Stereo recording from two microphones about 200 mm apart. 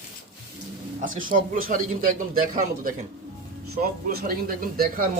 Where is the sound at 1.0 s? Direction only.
40° right (ahead or behind).